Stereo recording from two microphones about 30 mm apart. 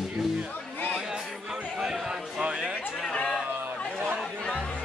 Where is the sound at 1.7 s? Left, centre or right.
Right.